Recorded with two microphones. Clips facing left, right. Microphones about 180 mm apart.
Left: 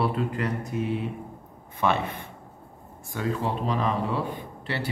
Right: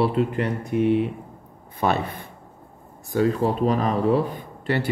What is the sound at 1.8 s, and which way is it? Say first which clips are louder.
A man's voice: right 2 dB; 40° right (ahead or behind).